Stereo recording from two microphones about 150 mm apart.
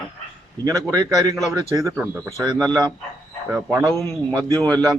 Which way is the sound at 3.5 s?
15° right (ahead or behind).